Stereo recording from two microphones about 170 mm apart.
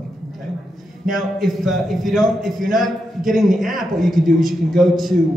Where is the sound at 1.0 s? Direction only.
Centre (ahead or behind).